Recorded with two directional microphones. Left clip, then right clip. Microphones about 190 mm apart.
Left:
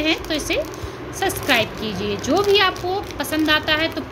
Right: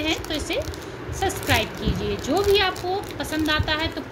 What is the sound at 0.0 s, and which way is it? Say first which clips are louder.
Speech: left 4 dB; 10° left (ahead or behind).